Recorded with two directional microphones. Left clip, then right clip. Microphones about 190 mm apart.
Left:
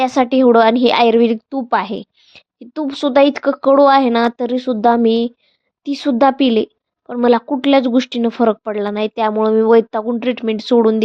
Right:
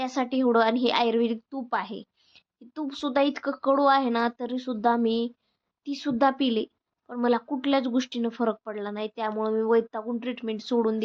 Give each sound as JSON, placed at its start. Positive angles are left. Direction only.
{"t": 0.0, "sound": "a woman's voice", "side_deg": 40}